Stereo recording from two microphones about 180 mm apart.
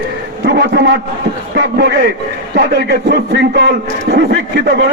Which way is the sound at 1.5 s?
70° right (ahead or behind).